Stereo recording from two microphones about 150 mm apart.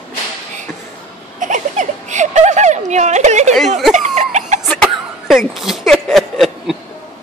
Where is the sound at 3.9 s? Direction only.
50° right (ahead or behind).